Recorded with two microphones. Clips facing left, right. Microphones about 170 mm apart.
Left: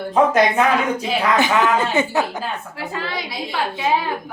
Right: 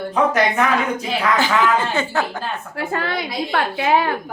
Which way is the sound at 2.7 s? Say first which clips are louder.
Right 4 dB; 55° right (ahead or behind).